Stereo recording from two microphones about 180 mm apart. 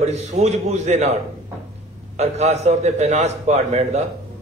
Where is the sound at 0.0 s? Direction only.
40° right (ahead or behind).